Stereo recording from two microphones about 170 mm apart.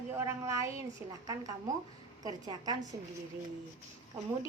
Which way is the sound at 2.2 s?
25° right (ahead or behind).